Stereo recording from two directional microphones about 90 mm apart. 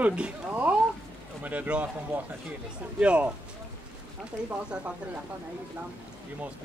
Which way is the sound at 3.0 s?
15° right (ahead or behind).